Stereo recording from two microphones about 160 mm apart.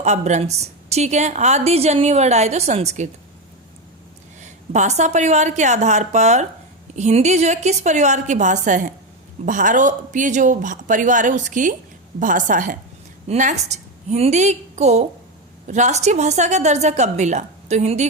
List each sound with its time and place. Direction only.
0.0 s a woman's voice: 45° right (ahead or behind)
4.4 s a woman's voice: 50° right (ahead or behind)